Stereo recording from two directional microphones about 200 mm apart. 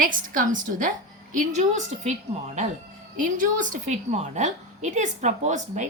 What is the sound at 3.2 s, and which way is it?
A woman's voice, 40° right (ahead or behind).